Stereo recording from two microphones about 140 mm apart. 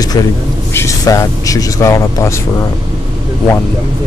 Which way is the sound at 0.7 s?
20° left (ahead or behind).